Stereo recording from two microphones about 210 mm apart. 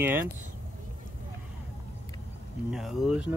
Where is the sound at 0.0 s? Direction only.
10° right (ahead or behind).